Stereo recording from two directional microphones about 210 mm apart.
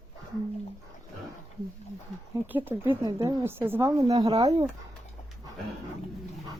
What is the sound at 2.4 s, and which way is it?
Speech, 10° right (ahead or behind).